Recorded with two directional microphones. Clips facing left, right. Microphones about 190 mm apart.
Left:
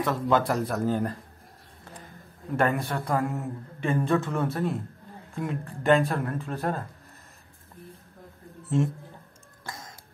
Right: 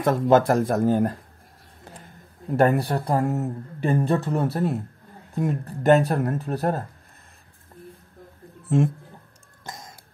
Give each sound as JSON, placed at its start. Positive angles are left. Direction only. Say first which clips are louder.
{"t": 0.0, "sound": "speech", "louder": "right 6 dB", "side_deg": -45}
{"t": 2.5, "sound": "speech", "louder": "right 6 dB", "side_deg": -40}
{"t": 8.6, "sound": "a man's voice", "louder": "right 4 dB", "side_deg": -55}
{"t": 9.7, "sound": "cough", "louder": "right 2 dB", "side_deg": -15}